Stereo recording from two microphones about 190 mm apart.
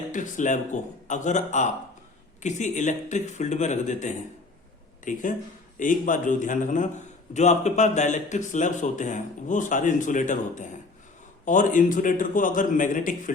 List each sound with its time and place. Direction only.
0.1 s a man's voice: 40° left (ahead or behind)